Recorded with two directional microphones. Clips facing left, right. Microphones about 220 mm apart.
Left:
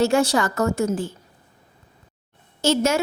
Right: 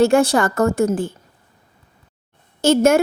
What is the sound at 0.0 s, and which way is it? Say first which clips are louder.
A woman's voice: right 4 dB; 55° right (ahead or behind).